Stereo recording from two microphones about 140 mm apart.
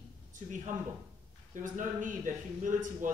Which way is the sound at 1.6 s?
65° right (ahead or behind).